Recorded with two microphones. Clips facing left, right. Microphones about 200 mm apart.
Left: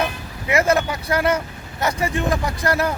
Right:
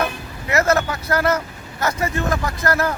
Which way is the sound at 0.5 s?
10° left (ahead or behind).